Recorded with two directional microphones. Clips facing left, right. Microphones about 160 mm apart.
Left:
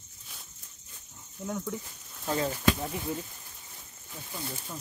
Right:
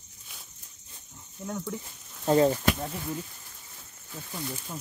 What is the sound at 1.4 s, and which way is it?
Speech, centre (ahead or behind).